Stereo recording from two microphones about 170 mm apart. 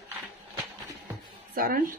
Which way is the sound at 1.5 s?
55° right (ahead or behind).